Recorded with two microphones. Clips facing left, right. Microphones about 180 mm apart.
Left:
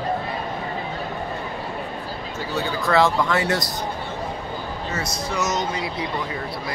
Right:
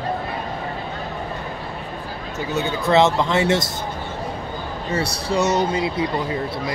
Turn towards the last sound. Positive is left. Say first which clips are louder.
# right 5 dB
turn(degrees=-25)  # may be behind; listen again after turning